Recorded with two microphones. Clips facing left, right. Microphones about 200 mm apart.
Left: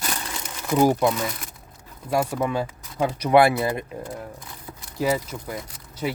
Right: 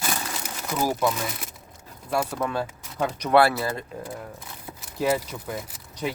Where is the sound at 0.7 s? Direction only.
20° left (ahead or behind).